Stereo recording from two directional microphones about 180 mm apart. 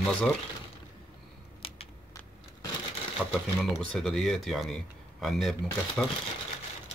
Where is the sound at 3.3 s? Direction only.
Centre (ahead or behind).